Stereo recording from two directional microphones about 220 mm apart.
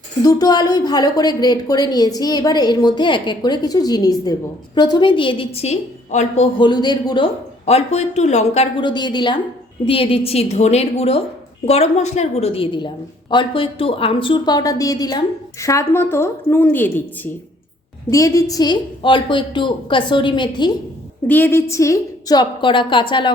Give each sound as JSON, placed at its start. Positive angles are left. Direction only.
{"t": 0.2, "sound": "a woman's voice", "side_deg": 15}
{"t": 7.6, "sound": "a woman's voice", "side_deg": 30}
{"t": 18.1, "sound": "a woman's voice", "side_deg": 15}
{"t": 21.2, "sound": "a woman's voice", "side_deg": 10}